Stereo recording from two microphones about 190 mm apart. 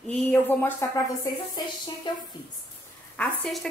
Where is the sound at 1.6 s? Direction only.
20° left (ahead or behind).